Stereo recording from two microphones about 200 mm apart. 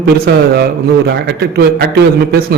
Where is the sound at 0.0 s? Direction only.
55° right (ahead or behind).